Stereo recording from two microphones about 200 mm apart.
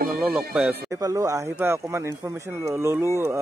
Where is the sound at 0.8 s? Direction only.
15° right (ahead or behind).